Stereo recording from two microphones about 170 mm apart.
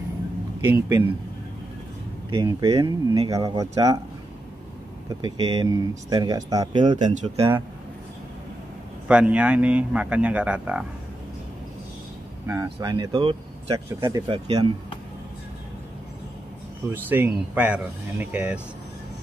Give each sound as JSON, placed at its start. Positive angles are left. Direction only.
{"t": 0.7, "sound": "speech", "side_deg": -20}
{"t": 2.3, "sound": "speech", "side_deg": -30}
{"t": 5.2, "sound": "speech", "side_deg": -25}
{"t": 9.0, "sound": "speech", "side_deg": -5}
{"t": 12.4, "sound": "speech", "side_deg": -20}
{"t": 13.9, "sound": "speech", "side_deg": -20}
{"t": 14.2, "sound": "speech", "side_deg": -30}
{"t": 16.9, "sound": "speech", "side_deg": -10}